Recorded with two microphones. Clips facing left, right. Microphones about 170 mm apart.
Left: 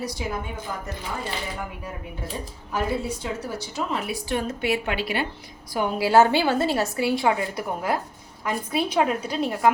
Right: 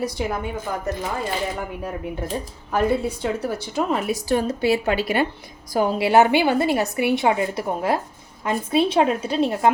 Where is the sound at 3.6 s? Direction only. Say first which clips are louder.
Right 5 dB; 50° right (ahead or behind).